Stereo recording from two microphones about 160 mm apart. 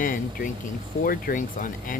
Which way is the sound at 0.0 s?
60° left (ahead or behind).